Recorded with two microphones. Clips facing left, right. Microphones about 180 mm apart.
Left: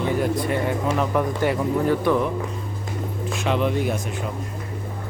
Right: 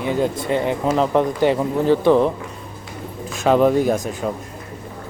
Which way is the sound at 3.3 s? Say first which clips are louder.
Right 8 dB; 40° right (ahead or behind).